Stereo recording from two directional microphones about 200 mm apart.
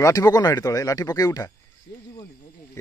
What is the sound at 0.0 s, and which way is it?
Speech, 15° left (ahead or behind).